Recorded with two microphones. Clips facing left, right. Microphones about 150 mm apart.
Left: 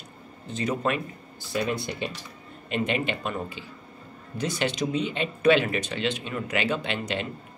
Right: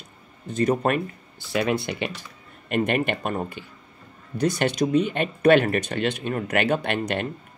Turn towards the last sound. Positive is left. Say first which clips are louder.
# right 4 dB
turn(degrees=-55)  # may be behind; listen again after turning